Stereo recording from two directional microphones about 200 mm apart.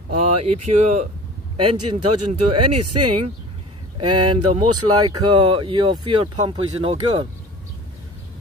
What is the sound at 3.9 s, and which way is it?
Speech, 25° right (ahead or behind).